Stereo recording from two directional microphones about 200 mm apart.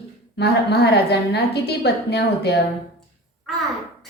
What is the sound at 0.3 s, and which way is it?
A woman's voice, 55° left (ahead or behind).